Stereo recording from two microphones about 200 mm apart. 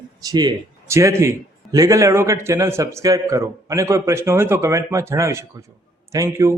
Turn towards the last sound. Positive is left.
turn(degrees=-15)  # may be behind; listen again after turning